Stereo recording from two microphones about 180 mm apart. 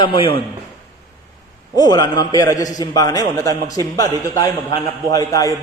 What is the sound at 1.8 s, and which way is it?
A man's voice, 20° left (ahead or behind).